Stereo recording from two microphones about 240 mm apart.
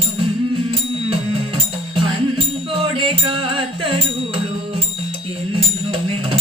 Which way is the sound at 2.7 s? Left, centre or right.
Right.